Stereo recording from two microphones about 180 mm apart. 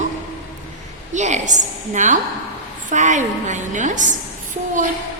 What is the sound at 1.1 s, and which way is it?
A woman's voice, 40° right (ahead or behind).